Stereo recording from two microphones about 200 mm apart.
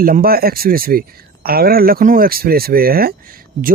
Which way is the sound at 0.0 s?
45° right (ahead or behind).